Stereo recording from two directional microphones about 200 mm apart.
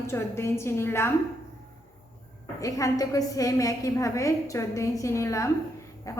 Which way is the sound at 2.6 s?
15° left (ahead or behind).